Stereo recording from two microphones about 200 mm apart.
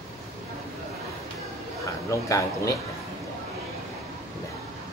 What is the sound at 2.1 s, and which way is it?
Speech, 15° left (ahead or behind).